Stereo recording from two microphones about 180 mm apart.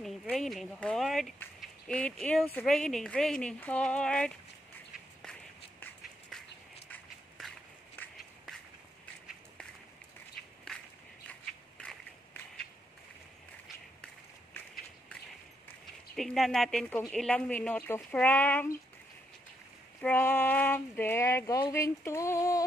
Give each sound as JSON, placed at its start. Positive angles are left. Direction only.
{"t": 0.0, "sound": "speech", "side_deg": 0}
{"t": 5.2, "sound": "a sound", "side_deg": 5}
{"t": 11.8, "sound": "crushing", "side_deg": 5}
{"t": 16.2, "sound": "speech", "side_deg": 0}
{"t": 20.0, "sound": "speech", "side_deg": 10}